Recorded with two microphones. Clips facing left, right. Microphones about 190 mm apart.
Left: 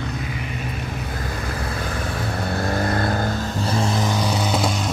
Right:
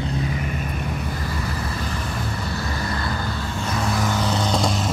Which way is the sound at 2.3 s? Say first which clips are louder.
Left 5 dB; 55° left (ahead or behind).